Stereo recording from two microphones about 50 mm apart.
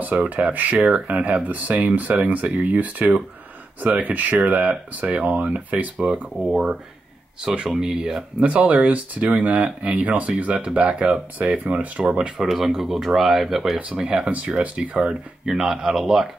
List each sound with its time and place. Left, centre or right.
0.0 s speech: right
6.4 s speech: centre
11.3 s speech: right
12.0 s speech: centre
12.4 s speech: centre
13.9 s speech: centre
15.0 s speech: centre